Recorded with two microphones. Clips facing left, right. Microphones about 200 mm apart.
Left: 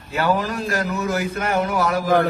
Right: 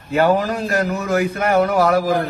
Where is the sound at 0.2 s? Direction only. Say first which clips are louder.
Right 5 dB; 35° right (ahead or behind).